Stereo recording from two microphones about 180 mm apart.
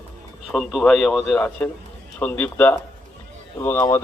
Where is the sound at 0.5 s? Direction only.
Centre (ahead or behind).